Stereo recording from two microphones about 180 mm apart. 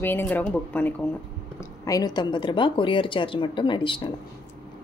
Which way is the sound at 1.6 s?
20° left (ahead or behind).